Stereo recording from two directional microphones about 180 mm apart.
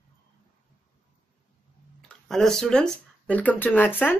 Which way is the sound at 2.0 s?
Centre (ahead or behind).